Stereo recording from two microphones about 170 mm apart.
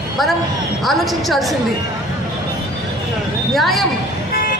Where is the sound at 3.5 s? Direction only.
Centre (ahead or behind).